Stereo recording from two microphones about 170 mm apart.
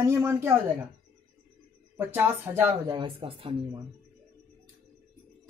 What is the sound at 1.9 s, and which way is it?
Speech, 10° right (ahead or behind).